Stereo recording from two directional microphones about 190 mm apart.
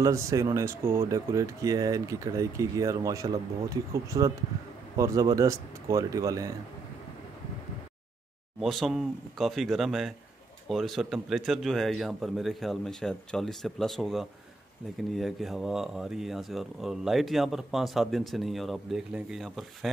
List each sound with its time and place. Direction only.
0.0 s speech: 15° right (ahead or behind)
8.5 s speech: centre (ahead or behind)